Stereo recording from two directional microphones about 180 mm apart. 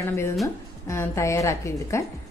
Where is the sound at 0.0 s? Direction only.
15° left (ahead or behind).